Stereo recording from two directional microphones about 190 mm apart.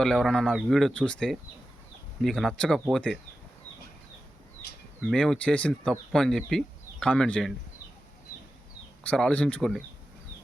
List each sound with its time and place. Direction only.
0.0 s speech: 5° left (ahead or behind)
4.9 s speech: centre (ahead or behind)
9.0 s speech: 5° left (ahead or behind)